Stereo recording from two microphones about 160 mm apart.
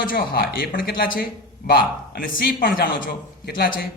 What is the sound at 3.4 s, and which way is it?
Speech, 75° left (ahead or behind).